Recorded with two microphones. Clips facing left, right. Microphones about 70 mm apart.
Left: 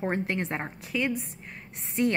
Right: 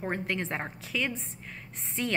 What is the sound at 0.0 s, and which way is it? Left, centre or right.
Speech, centre.